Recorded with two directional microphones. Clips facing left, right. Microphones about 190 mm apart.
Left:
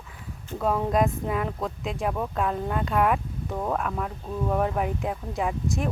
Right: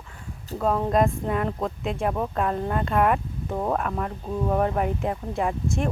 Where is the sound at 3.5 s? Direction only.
15° right (ahead or behind).